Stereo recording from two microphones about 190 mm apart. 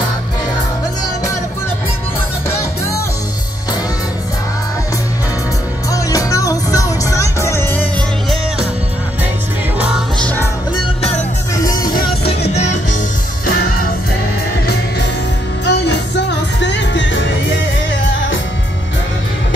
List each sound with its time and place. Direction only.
5.9 s music: 20° left (ahead or behind)
10.2 s music: 10° left (ahead or behind)
11.5 s music: 20° left (ahead or behind)
12.3 s music: 35° left (ahead or behind)
15.6 s music: 65° left (ahead or behind)